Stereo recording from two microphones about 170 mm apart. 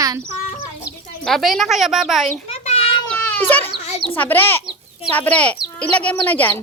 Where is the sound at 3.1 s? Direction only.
10° left (ahead or behind).